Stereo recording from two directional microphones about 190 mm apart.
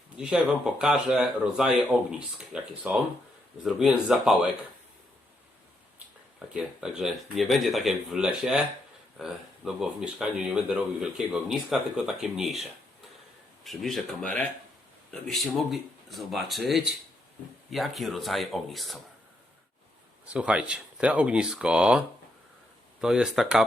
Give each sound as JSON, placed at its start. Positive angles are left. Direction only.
{"t": 0.2, "sound": "speech", "side_deg": -5}
{"t": 6.5, "sound": "speech", "side_deg": -5}
{"t": 13.7, "sound": "speech", "side_deg": 0}
{"t": 20.2, "sound": "speech", "side_deg": -5}